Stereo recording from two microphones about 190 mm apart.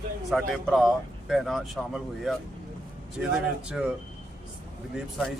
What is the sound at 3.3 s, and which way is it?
Speech, 5° right (ahead or behind).